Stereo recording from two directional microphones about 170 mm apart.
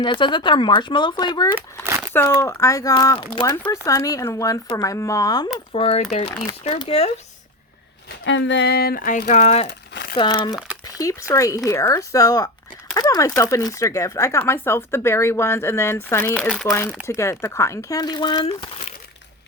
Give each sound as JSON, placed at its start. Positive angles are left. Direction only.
{"t": 0.0, "sound": "speech", "side_deg": 30}
{"t": 5.7, "sound": "speech", "side_deg": 35}
{"t": 8.2, "sound": "speech", "side_deg": 90}
{"t": 9.6, "sound": "crumpling", "side_deg": 85}
{"t": 10.2, "sound": "speech", "side_deg": 25}
{"t": 17.1, "sound": "speech", "side_deg": 15}